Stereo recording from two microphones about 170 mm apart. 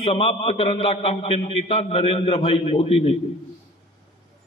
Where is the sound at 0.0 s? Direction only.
35° left (ahead or behind).